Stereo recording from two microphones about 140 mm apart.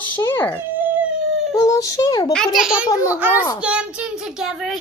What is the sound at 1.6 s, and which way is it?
Speech, 25° left (ahead or behind).